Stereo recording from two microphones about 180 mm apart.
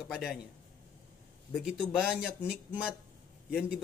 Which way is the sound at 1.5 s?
Centre (ahead or behind).